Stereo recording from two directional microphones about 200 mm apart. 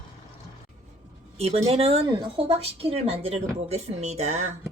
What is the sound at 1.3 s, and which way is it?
Speech, 30° right (ahead or behind).